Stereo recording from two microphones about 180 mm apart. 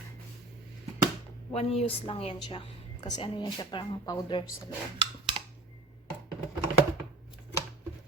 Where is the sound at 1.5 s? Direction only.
35° left (ahead or behind).